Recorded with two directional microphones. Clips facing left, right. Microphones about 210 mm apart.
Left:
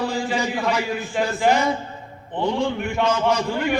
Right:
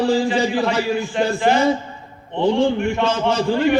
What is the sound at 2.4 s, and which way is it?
A man's voice, 30° right (ahead or behind).